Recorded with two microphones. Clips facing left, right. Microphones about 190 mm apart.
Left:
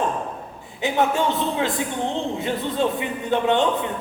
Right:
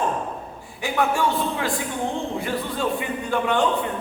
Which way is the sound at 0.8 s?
20° left (ahead or behind).